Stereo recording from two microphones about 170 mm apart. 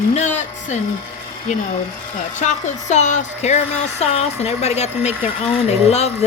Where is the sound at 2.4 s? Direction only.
45° left (ahead or behind).